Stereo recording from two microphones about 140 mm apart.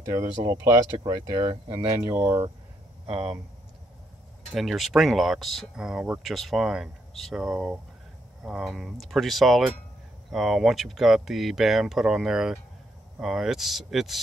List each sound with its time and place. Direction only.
0.0 s speech: 20° right (ahead or behind)
1.5 s speech: 35° right (ahead or behind)
2.0 s speech: 15° right (ahead or behind)
3.1 s speech: 45° right (ahead or behind)
4.6 s speech: centre (ahead or behind)